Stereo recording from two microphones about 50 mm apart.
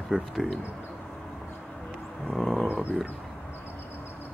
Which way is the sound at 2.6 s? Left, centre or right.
Right.